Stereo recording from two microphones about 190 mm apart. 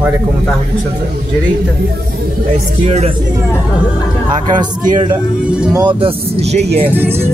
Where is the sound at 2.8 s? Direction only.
35° right (ahead or behind).